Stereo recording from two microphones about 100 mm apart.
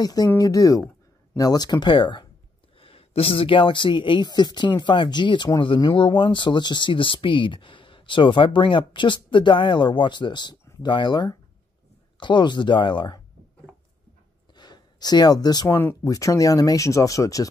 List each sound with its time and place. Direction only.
0.0 s speech: 40° left (ahead or behind)
2.8 s speech: 75° left (ahead or behind); by 13.2 s 50° left (ahead or behind)
14.5 s a sound: 45° left (ahead or behind)
15.7 s speech: 20° left (ahead or behind)
16.0 s speech: 35° left (ahead or behind)